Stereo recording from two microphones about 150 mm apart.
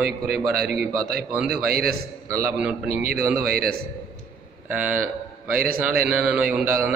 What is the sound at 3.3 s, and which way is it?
Speech, 80° right.